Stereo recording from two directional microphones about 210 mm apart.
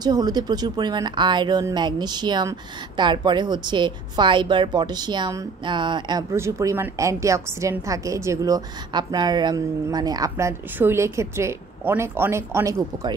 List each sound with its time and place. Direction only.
0.0 s a woman's voice: 20° right (ahead or behind)